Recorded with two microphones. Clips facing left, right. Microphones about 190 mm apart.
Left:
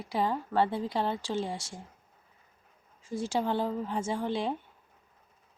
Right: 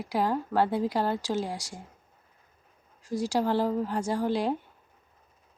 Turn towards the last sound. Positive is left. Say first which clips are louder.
# right 4 dB
turn(degrees=-5)  # may be behind; listen again after turning